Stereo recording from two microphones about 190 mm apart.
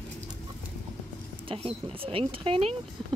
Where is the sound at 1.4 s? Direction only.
30° right (ahead or behind).